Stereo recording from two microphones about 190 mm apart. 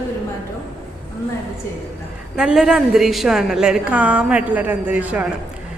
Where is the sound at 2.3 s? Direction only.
Centre (ahead or behind).